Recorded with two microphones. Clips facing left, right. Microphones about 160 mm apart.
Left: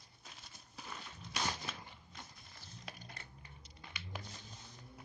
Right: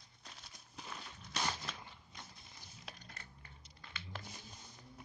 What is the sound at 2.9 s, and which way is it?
Typing, centre (ahead or behind).